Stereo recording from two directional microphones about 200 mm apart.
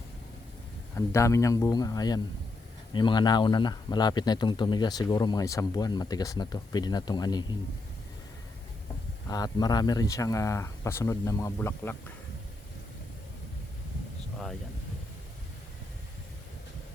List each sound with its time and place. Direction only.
0.9 s speech: 15° left (ahead or behind)
9.3 s speech: 20° left (ahead or behind)